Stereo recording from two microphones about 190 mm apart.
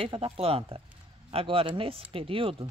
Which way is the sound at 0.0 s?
30° right (ahead or behind).